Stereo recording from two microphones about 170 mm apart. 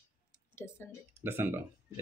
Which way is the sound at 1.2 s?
10° right (ahead or behind).